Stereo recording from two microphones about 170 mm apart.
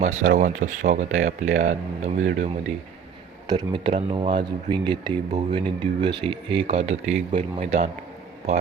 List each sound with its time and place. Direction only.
0.0 s speech: 50° right (ahead or behind)
3.4 s speech: 25° right (ahead or behind)